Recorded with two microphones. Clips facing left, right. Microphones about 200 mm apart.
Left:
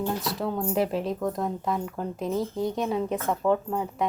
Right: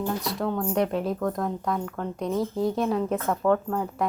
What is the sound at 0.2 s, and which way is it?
A woman's voice, centre (ahead or behind).